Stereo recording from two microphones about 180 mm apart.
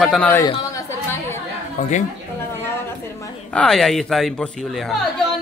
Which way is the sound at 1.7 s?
40° left (ahead or behind).